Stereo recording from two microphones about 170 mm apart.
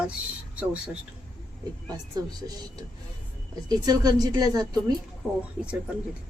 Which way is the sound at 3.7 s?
20° right (ahead or behind).